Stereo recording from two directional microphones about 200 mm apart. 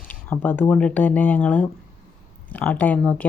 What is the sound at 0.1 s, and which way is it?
Speech, 10° left (ahead or behind).